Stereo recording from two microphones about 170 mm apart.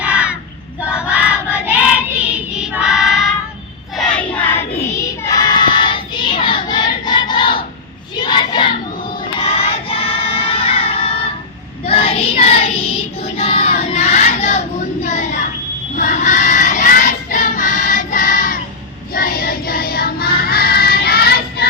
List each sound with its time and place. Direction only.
0.0 s child singing: 5° right (ahead or behind)
2.3 s choir: 5° right (ahead or behind)
3.9 s child singing: 5° left (ahead or behind)
5.2 s child singing: 20° left (ahead or behind)
9.4 s music: 35° left (ahead or behind)
11.9 s child singing: 35° left (ahead or behind)
16.0 s choir: 50° left (ahead or behind)
19.1 s music: 55° left (ahead or behind)